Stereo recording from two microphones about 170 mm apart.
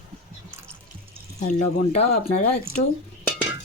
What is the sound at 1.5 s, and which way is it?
Speech, 40° left (ahead or behind).